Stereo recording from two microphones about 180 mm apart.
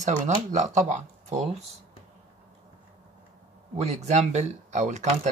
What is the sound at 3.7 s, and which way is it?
Speech, 35° right (ahead or behind).